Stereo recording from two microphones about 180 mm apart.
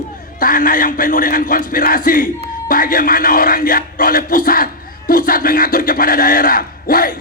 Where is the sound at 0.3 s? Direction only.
50° left (ahead or behind).